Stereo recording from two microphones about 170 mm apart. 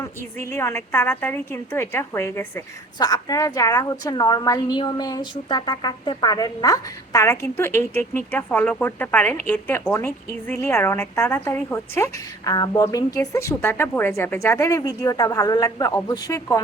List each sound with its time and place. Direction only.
0.0 s a woman's voice: 15° left (ahead or behind)